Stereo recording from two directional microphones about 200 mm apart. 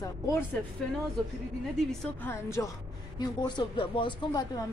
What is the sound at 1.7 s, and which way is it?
Speech, centre (ahead or behind).